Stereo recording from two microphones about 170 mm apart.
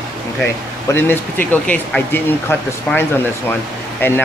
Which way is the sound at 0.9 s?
15° left (ahead or behind).